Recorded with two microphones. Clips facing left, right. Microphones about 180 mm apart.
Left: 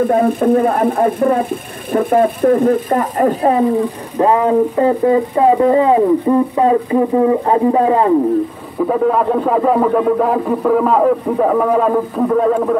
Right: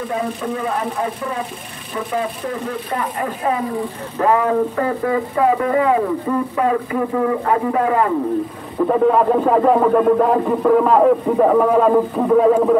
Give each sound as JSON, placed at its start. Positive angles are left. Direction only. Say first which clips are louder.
{"t": 0.0, "sound": "speech", "louder": "left 10 dB", "side_deg": 55}
{"t": 4.2, "sound": "speech", "louder": "left 4 dB", "side_deg": 25}
{"t": 8.7, "sound": "speech", "louder": "even", "side_deg": 0}